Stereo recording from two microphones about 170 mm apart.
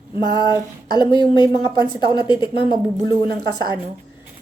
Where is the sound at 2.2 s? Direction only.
25° left (ahead or behind).